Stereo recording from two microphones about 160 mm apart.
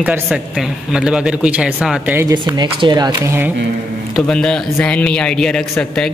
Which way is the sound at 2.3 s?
25° right (ahead or behind).